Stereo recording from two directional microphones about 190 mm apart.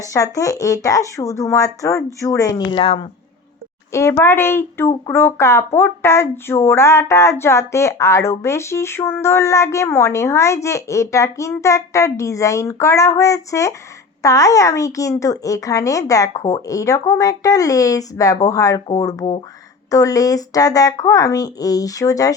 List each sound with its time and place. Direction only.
0.0 s speech: 15° left (ahead or behind)
4.2 s speech: 10° left (ahead or behind)